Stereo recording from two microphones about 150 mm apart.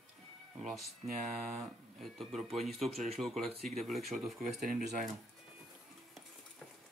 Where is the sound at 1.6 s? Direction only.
Centre (ahead or behind).